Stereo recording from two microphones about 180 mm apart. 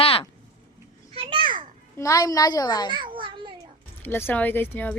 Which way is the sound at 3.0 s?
25° right (ahead or behind).